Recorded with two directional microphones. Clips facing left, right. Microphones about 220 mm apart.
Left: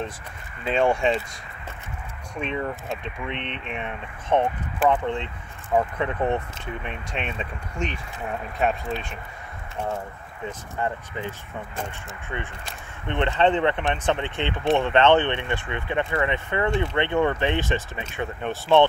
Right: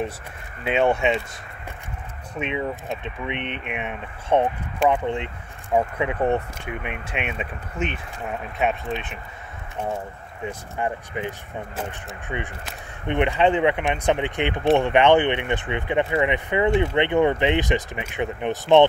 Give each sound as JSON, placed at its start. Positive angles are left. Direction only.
{"t": 0.7, "sound": "speech", "side_deg": -5}
{"t": 2.3, "sound": "speech", "side_deg": -5}
{"t": 10.8, "sound": "speech", "side_deg": -15}